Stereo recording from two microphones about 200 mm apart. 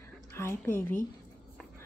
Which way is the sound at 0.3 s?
10° left (ahead or behind).